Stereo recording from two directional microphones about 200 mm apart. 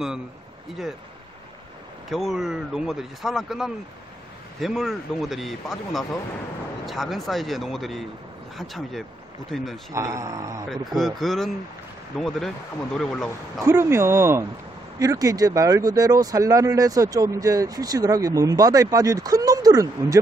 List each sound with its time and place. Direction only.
2.0 s speech: centre (ahead or behind)
9.9 s speech: 15° right (ahead or behind)
11.0 s speech: centre (ahead or behind)
13.7 s speech: 15° right (ahead or behind)